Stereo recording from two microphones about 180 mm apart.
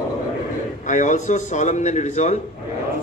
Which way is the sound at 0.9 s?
45° left (ahead or behind).